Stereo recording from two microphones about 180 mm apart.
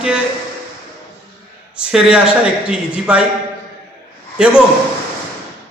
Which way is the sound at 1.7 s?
5° right (ahead or behind).